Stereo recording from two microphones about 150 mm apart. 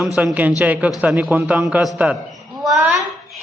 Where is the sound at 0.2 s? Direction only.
10° right (ahead or behind).